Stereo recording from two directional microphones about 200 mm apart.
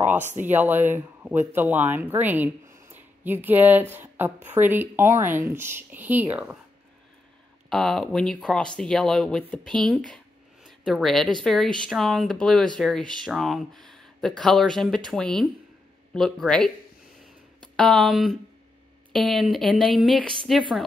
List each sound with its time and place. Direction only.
0.2 s speech: 35° right (ahead or behind)
0.5 s speech: 10° right (ahead or behind)
7.7 s speech: centre (ahead or behind)